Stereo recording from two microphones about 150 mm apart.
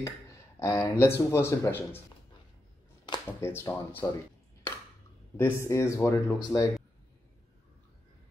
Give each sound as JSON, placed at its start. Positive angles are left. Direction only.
{"t": 0.0, "sound": "speech", "side_deg": 20}
{"t": 3.3, "sound": "speech", "side_deg": 15}
{"t": 5.4, "sound": "speech", "side_deg": 20}